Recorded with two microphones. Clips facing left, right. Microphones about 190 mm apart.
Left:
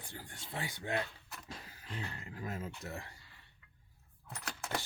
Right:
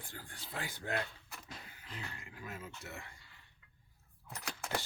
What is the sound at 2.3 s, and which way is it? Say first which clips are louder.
Speech: left 7 dB; 40° left (ahead or behind).